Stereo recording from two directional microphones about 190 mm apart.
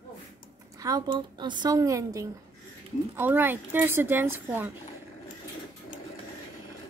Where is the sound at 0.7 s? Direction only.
20° right (ahead or behind).